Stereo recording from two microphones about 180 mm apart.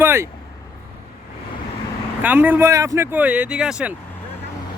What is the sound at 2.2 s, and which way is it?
Speech, 10° right (ahead or behind).